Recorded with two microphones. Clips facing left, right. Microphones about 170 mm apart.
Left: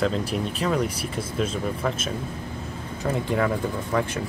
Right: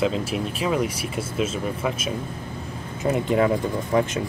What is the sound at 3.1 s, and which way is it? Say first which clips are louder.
Speech: right 4 dB; 20° right (ahead or behind).